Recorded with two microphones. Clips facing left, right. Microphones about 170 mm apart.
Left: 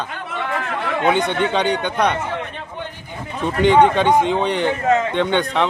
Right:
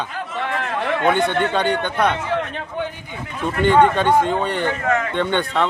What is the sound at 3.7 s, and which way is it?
A man's voice, 15° left (ahead or behind).